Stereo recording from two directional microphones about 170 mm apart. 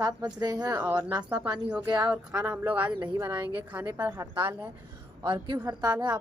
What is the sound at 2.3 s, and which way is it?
A woman's voice, 5° right (ahead or behind).